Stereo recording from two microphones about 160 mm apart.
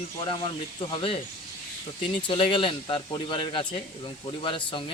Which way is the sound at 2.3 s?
30° left (ahead or behind).